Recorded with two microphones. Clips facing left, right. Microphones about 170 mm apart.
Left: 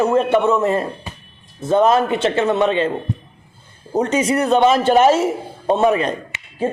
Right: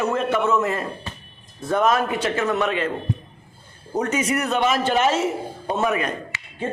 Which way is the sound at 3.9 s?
30° left (ahead or behind).